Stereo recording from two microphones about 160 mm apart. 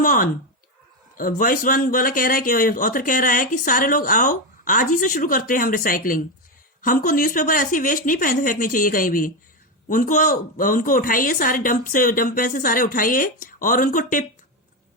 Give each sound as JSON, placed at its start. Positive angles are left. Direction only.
{"t": 0.0, "sound": "speech", "side_deg": 60}